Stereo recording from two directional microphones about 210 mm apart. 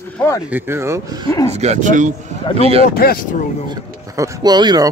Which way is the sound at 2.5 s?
25° left (ahead or behind).